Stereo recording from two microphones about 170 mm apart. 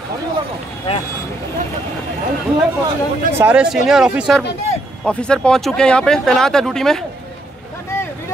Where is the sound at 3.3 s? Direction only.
10° right (ahead or behind).